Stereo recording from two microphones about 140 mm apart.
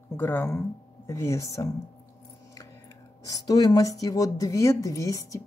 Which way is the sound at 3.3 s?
25° left (ahead or behind).